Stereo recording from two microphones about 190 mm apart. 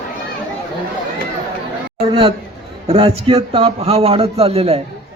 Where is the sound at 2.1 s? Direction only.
25° right (ahead or behind).